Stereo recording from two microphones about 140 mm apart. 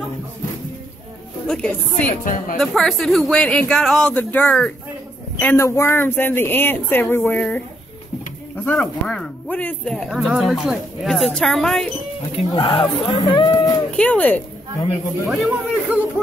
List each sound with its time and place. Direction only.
1.5 s a man's voice: 10° left (ahead or behind)
8.7 s a man's voice: 5° left (ahead or behind)
10.0 s a man's voice: 5° right (ahead or behind)
12.4 s speech: 40° left (ahead or behind)
13.9 s speech: 10° left (ahead or behind)
15.2 s a man's voice: centre (ahead or behind)